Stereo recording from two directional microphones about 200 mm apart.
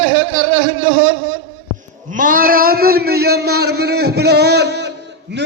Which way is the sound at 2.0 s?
40° right (ahead or behind).